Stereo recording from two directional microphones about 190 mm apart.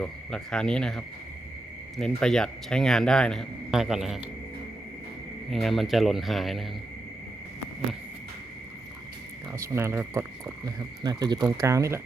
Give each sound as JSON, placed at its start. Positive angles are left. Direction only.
{"t": 0.0, "sound": "speech", "side_deg": 5}
{"t": 5.5, "sound": "speech", "side_deg": 0}
{"t": 9.5, "sound": "speech", "side_deg": -15}